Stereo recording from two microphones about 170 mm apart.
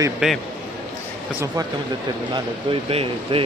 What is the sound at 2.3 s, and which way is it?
A man's voice, 30° right (ahead or behind).